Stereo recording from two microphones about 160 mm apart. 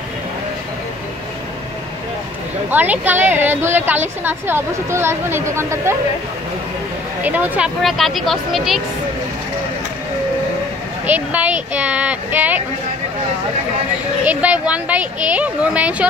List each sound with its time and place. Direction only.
2.7 s a woman's voice: 10° right (ahead or behind)
7.2 s speech: 10° right (ahead or behind)
11.1 s a woman's voice: 10° right (ahead or behind)
14.2 s a woman's voice: 10° right (ahead or behind)